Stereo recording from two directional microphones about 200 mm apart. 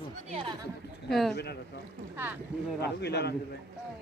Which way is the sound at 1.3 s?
55° left (ahead or behind).